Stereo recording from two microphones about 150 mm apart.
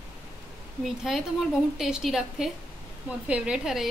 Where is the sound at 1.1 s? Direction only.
Centre (ahead or behind).